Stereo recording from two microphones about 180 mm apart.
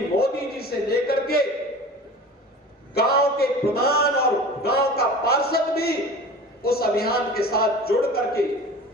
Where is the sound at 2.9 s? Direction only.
60° left (ahead or behind).